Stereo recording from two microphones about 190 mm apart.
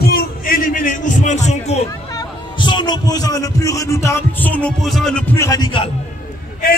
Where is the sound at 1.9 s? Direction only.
20° left (ahead or behind).